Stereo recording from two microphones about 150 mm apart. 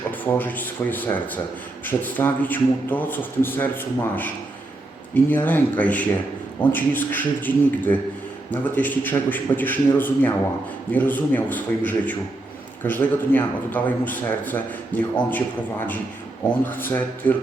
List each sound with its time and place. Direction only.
0.1 s a man's voice: 10° left (ahead or behind)
5.3 s a man's voice: 15° left (ahead or behind)
16.6 s a man's voice: 15° left (ahead or behind)